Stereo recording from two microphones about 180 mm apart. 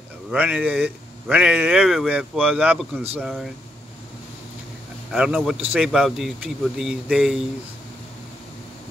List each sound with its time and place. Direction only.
0.3 s speech: 5° right (ahead or behind)
5.1 s speech: 5° right (ahead or behind)